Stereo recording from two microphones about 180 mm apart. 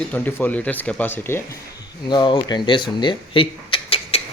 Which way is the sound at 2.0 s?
25° left (ahead or behind).